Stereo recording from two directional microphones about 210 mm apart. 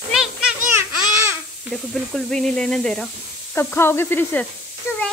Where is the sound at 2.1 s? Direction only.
Centre (ahead or behind).